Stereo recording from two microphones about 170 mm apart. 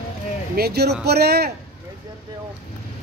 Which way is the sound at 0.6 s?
70° right (ahead or behind).